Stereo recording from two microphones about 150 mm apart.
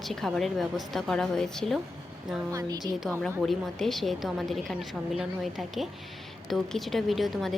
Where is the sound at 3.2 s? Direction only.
Centre (ahead or behind).